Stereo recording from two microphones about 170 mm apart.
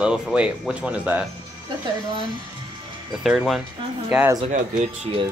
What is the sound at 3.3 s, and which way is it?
Speech, 5° right (ahead or behind).